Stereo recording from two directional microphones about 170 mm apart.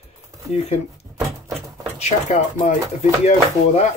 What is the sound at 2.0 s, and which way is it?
Speech, 40° left (ahead or behind).